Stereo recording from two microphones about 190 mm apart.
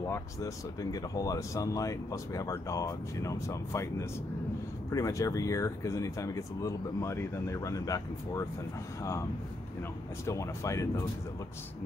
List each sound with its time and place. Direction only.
0.1 s speech: 20° left (ahead or behind)
4.9 s speech: 15° left (ahead or behind)
10.2 s speech: 15° left (ahead or behind)